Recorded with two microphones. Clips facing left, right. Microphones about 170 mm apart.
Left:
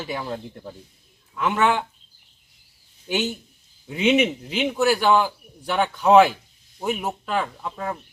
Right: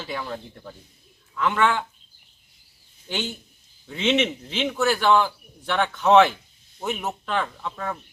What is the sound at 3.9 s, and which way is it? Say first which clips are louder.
A man's voice: left 3 dB; 10° left (ahead or behind).